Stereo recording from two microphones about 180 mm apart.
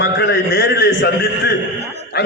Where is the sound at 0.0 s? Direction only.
75° left (ahead or behind).